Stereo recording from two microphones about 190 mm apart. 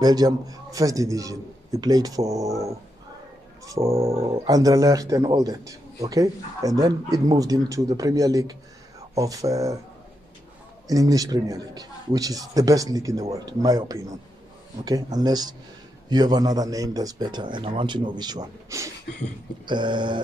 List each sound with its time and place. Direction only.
0.0 s a man's voice: 20° right (ahead or behind)
3.6 s a man's voice: 15° right (ahead or behind)
4.1 s speech: 30° right (ahead or behind)
4.5 s a man's voice: 20° right (ahead or behind)
10.9 s a man's voice: 20° right (ahead or behind)